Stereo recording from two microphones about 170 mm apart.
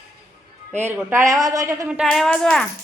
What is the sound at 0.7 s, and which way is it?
Speech, 15° right (ahead or behind).